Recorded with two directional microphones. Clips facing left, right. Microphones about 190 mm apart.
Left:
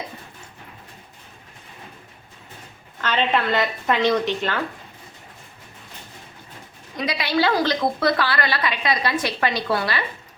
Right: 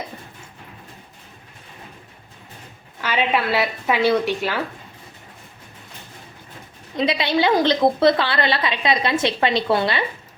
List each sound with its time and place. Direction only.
3.0 s a woman's voice: 10° right (ahead or behind)
6.9 s a woman's voice: 25° right (ahead or behind)